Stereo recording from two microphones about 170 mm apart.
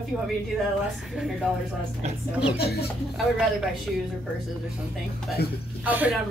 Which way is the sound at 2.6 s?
70° left (ahead or behind).